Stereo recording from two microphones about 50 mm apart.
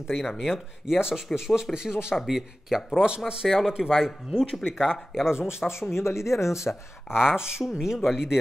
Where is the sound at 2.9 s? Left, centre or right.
Centre.